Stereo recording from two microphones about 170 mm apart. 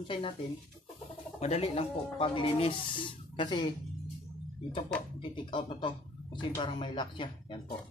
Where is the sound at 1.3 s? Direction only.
40° left (ahead or behind).